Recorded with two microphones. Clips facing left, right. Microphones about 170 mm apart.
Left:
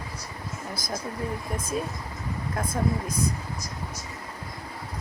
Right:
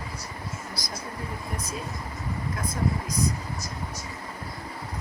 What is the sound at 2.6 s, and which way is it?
Speech, 55° left (ahead or behind).